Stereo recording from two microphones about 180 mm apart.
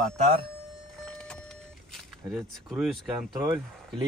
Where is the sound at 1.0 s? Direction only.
5° left (ahead or behind).